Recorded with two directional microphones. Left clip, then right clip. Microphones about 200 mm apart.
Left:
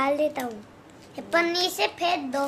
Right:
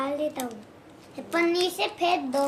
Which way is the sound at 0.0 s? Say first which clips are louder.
Left 5 dB; 35° left (ahead or behind).